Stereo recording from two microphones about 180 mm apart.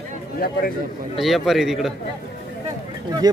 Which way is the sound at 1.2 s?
Centre (ahead or behind).